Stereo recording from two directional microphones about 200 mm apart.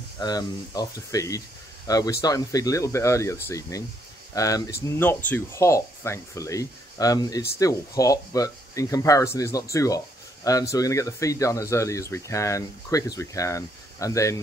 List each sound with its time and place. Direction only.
0.2 s speech: 20° left (ahead or behind)